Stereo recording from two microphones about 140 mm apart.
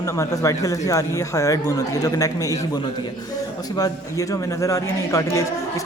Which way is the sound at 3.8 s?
25° left (ahead or behind).